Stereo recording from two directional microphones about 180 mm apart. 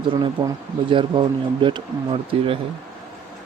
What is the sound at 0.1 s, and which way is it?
Speech, 25° right (ahead or behind).